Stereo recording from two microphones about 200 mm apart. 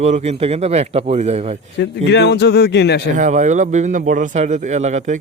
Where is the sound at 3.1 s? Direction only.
40° right (ahead or behind).